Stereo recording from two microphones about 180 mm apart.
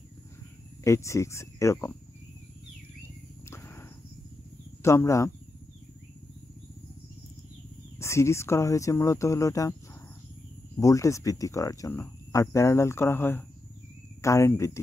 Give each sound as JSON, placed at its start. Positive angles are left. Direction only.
{"t": 0.8, "sound": "speech", "side_deg": 15}
{"t": 3.4, "sound": "cricket", "side_deg": 15}
{"t": 4.8, "sound": "speech", "side_deg": 15}
{"t": 8.0, "sound": "speech", "side_deg": 15}
{"t": 10.8, "sound": "speech", "side_deg": 20}